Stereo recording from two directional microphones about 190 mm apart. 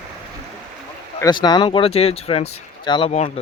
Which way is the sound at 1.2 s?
20° left (ahead or behind).